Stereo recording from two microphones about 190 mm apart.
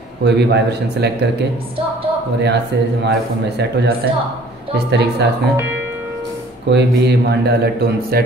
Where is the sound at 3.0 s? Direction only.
65° right (ahead or behind).